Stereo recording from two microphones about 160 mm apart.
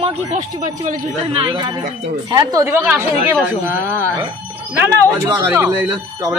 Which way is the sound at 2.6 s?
10° right (ahead or behind).